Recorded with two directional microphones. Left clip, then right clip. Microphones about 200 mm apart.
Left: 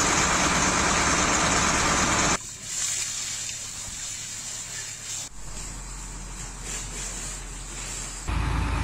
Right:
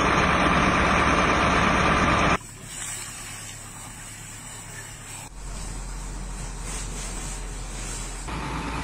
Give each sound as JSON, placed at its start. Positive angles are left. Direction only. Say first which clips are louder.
{"t": 0.0, "sound": "vehicle", "louder": "right 2 dB", "side_deg": -15}
{"t": 8.3, "sound": "vehicle", "louder": "even", "side_deg": -50}